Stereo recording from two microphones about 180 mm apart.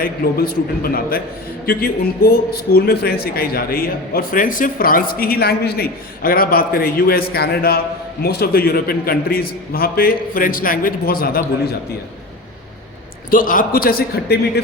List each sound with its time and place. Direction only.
0.0 s a man's voice: 55° left (ahead or behind)
13.3 s a man's voice: 50° left (ahead or behind)